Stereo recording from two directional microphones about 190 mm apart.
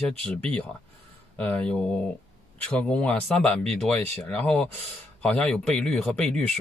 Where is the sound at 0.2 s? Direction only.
5° left (ahead or behind).